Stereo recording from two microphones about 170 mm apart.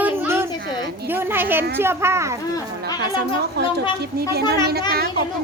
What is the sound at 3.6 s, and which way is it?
Speech, 75° right (ahead or behind).